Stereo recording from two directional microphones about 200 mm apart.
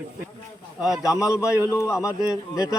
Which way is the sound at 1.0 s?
15° left (ahead or behind).